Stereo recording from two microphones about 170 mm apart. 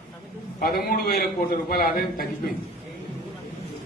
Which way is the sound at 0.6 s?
65° left (ahead or behind).